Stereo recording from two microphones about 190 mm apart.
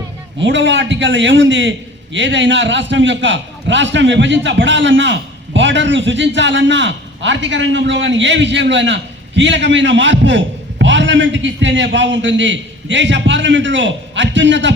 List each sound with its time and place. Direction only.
0.4 s a man's voice: 70° right (ahead or behind)